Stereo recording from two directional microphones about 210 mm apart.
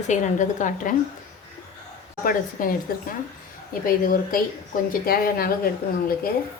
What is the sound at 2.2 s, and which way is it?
Speech, 45° left (ahead or behind).